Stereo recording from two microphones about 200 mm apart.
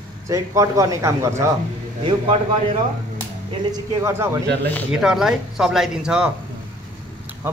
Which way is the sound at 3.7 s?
10° right (ahead or behind).